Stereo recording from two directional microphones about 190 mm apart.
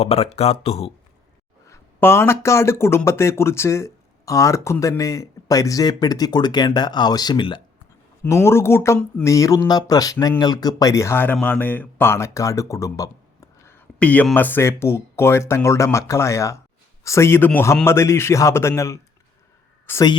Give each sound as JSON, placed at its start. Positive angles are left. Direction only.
{"t": 0.0, "sound": "speech", "side_deg": 30}
{"t": 1.6, "sound": "speech", "side_deg": 15}
{"t": 8.2, "sound": "speech", "side_deg": 15}